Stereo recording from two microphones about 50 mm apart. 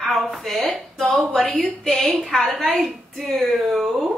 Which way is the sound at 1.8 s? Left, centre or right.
Centre.